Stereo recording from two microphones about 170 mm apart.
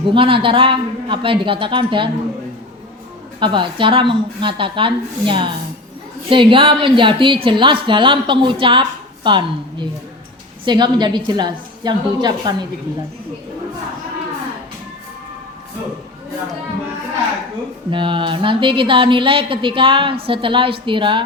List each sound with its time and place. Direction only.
0.0 s a woman's voice: 30° right (ahead or behind)
3.4 s a woman's voice: 30° right (ahead or behind)
17.9 s a woman's voice: 30° right (ahead or behind)